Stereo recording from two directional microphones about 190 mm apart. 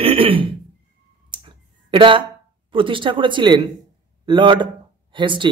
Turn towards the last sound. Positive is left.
turn(degrees=-25)  # may be behind; listen again after turning